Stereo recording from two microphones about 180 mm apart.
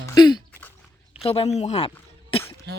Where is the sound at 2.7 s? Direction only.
65° right (ahead or behind).